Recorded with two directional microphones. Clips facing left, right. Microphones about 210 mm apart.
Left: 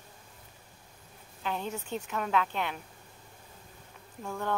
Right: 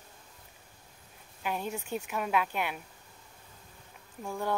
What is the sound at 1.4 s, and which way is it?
Speech, 10° right (ahead or behind).